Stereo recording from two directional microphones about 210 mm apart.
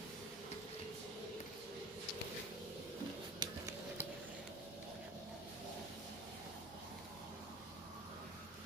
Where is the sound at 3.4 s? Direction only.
20° right (ahead or behind).